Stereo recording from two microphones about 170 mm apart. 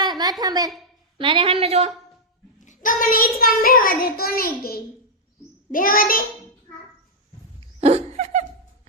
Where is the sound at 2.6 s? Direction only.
45° left (ahead or behind).